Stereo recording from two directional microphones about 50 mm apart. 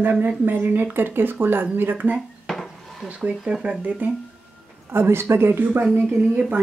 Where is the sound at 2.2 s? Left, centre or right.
Centre.